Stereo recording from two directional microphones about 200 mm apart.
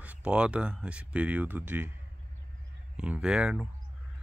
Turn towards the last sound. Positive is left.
turn(degrees=-5)  # may be behind; listen again after turning